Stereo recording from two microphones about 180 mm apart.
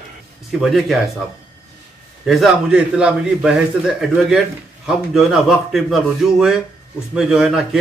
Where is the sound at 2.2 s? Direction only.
5° right (ahead or behind).